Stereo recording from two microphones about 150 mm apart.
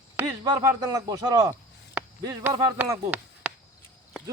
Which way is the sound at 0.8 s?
25° right (ahead or behind).